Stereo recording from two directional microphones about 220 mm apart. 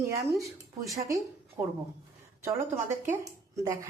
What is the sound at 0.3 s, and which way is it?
Speech, centre (ahead or behind).